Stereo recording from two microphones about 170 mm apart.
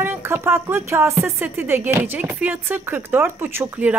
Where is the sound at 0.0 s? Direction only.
15° right (ahead or behind).